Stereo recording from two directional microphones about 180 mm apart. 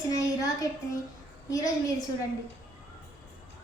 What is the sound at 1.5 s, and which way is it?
Speech, 20° left (ahead or behind).